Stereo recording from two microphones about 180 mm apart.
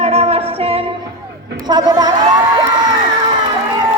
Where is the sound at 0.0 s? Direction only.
35° right (ahead or behind).